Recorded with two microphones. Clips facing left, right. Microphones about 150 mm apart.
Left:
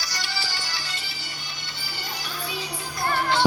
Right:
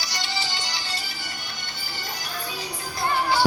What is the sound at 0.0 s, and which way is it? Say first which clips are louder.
Music: right 2 dB; 25° right (ahead or behind).